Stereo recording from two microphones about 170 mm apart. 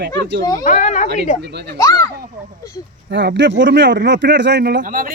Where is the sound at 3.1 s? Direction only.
90° right.